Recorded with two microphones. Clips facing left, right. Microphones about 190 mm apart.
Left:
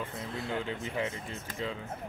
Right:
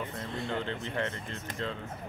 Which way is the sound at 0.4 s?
5° left (ahead or behind).